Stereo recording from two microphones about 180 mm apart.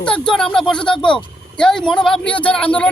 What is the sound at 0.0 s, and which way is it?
Speech, 5° left (ahead or behind).